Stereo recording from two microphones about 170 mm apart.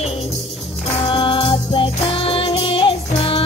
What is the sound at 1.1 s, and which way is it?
Music, 30° left (ahead or behind).